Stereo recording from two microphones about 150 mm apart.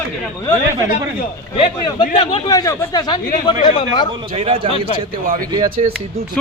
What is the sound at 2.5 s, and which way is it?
Speech, 25° left (ahead or behind).